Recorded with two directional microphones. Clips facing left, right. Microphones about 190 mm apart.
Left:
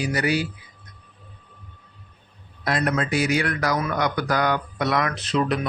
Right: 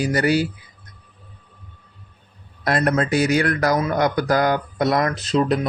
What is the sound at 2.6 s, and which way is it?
Speech, 45° right (ahead or behind).